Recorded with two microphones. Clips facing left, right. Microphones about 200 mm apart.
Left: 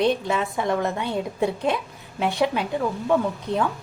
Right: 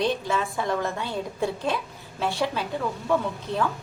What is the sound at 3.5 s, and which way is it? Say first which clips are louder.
Speech: left 2 dB; 55° left (ahead or behind).